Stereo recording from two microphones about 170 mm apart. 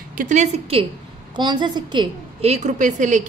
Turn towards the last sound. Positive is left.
turn(degrees=-45)  # may be behind; listen again after turning